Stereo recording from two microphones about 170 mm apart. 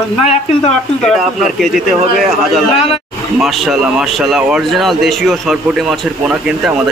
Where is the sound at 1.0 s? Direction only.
Centre (ahead or behind).